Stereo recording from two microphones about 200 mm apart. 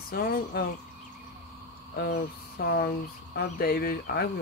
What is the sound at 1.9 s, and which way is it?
Speech, 50° left (ahead or behind).